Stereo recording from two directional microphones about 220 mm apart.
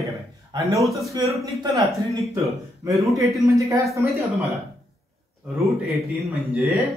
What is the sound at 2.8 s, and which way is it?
Speech, 15° right (ahead or behind).